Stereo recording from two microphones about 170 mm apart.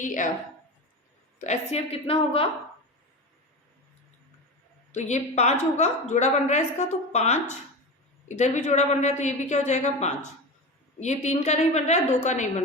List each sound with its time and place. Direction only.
0.0 s a woman's voice: 50° left (ahead or behind)
1.5 s a woman's voice: 35° left (ahead or behind)
4.9 s a woman's voice: 45° left (ahead or behind)